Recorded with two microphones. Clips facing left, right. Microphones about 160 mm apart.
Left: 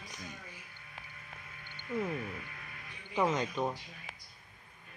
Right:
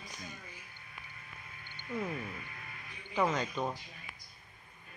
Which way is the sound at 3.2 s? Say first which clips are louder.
Left 1 dB; 20° left (ahead or behind).